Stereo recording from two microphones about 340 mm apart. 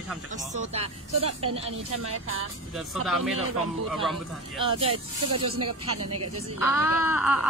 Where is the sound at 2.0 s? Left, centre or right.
Right.